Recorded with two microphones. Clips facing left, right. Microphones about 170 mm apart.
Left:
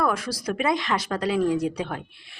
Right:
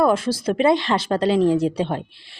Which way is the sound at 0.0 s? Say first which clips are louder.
Right 7 dB; 25° right (ahead or behind).